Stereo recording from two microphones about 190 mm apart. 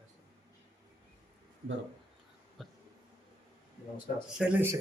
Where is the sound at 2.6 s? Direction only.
Centre (ahead or behind).